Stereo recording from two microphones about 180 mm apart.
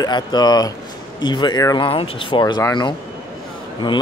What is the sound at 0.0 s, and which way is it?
Speech, 25° left (ahead or behind).